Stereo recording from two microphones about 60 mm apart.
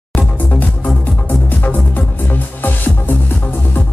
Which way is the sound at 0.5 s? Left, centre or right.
Left.